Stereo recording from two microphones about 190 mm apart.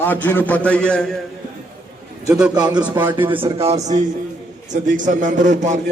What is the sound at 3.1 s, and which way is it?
A man's voice, 25° right (ahead or behind).